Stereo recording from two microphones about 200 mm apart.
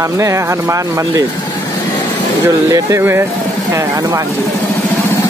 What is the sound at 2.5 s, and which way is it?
Speech, 15° right (ahead or behind).